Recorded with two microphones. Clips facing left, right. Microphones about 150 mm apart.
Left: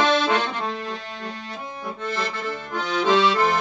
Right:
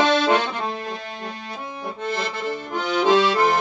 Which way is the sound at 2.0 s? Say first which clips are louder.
Right 2 dB; 15° right (ahead or behind).